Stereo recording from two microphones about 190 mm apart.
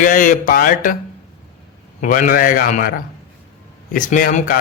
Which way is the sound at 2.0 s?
45° left (ahead or behind).